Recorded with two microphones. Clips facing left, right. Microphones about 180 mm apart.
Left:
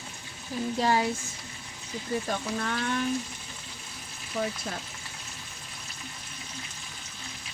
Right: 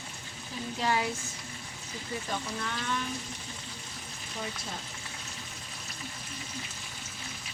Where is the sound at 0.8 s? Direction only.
35° left (ahead or behind).